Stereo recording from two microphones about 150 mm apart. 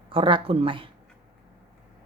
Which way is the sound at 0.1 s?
35° right (ahead or behind).